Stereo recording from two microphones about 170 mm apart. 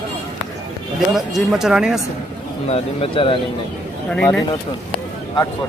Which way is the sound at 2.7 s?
35° left (ahead or behind).